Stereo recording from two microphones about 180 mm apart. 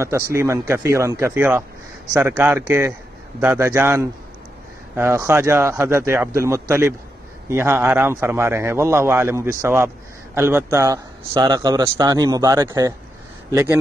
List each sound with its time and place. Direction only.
0.0 s a man's voice: 15° right (ahead or behind)